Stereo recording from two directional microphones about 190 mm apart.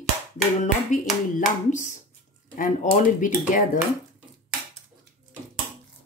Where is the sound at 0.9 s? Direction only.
40° left (ahead or behind).